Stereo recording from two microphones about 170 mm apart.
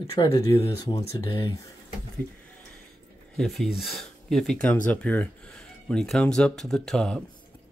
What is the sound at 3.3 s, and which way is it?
Speech, centre (ahead or behind).